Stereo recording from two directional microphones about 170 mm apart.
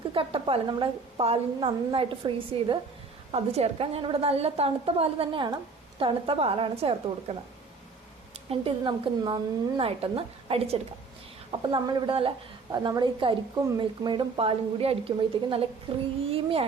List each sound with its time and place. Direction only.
0.1 s a woman's voice: 30° right (ahead or behind)
8.4 s a woman's voice: 30° right (ahead or behind)